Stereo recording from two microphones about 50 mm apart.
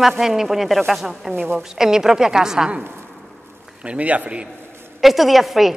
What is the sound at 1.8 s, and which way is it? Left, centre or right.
Speech, centre.